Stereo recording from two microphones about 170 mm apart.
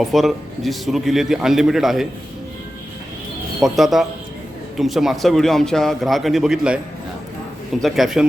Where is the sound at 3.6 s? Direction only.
Centre (ahead or behind).